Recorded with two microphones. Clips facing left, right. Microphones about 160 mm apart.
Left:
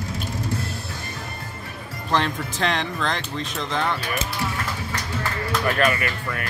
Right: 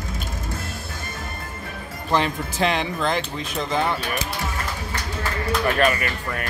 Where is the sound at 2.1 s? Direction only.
5° right (ahead or behind).